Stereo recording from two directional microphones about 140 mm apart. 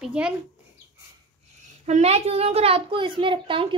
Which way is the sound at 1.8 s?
50° right (ahead or behind).